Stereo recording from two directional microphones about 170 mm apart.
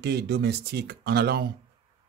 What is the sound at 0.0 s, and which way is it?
Speech, 70° right (ahead or behind).